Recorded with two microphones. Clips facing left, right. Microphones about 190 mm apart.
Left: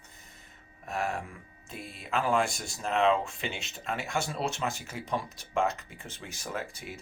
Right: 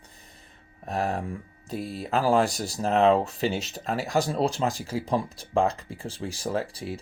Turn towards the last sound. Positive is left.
turn(degrees=-30)  # may be behind; listen again after turning